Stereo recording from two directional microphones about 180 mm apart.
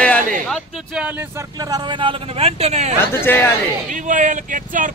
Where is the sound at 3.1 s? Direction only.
10° left (ahead or behind).